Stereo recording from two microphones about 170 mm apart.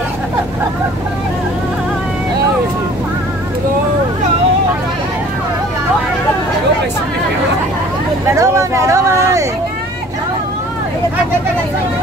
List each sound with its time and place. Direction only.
8.4 s speech: 20° right (ahead or behind)